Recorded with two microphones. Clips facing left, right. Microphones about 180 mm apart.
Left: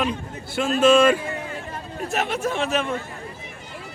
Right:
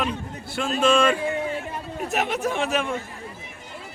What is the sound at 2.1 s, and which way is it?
Speech, 15° right (ahead or behind).